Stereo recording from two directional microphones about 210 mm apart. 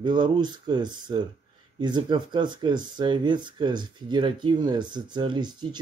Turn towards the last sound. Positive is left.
turn(degrees=-20)  # may be behind; listen again after turning